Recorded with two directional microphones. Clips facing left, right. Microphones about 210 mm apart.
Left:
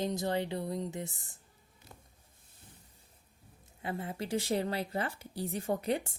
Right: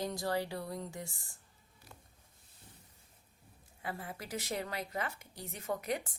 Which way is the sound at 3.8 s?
25° left (ahead or behind).